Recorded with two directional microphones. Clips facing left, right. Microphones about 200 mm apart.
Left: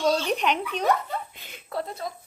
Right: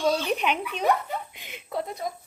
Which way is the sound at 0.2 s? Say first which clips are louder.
Left 1 dB; 5° right (ahead or behind).